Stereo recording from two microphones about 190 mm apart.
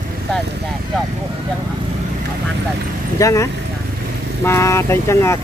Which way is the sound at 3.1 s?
15° left (ahead or behind).